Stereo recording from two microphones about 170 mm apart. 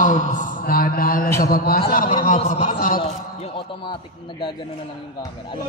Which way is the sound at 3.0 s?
30° left (ahead or behind).